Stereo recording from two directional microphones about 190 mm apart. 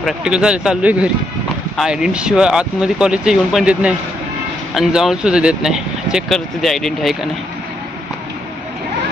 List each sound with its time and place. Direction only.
0.0 s speech: 5° right (ahead or behind)